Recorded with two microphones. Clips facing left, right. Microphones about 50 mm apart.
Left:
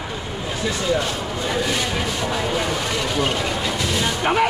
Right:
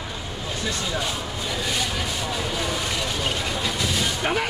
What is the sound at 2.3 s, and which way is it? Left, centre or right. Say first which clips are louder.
Speech: left 5 dB; centre.